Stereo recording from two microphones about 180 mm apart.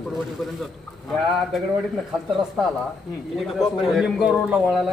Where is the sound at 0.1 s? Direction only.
Centre (ahead or behind).